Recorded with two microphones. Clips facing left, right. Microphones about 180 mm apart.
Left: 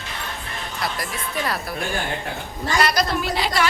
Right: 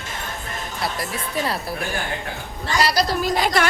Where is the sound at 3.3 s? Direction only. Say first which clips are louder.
Right 3 dB; 50° right (ahead or behind).